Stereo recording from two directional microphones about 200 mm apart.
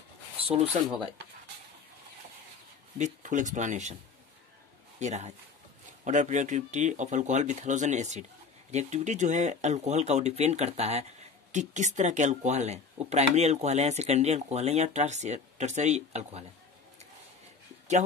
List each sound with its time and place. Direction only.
0.4 s speech: 25° right (ahead or behind)
3.0 s speech: 40° right (ahead or behind)
4.9 s a man's voice: 35° right (ahead or behind)